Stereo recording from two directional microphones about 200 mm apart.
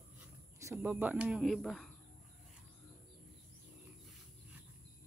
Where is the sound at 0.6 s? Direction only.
10° right (ahead or behind).